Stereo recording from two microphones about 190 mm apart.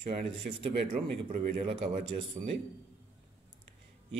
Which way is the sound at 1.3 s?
40° right (ahead or behind).